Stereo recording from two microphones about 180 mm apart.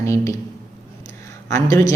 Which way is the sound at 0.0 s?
15° left (ahead or behind).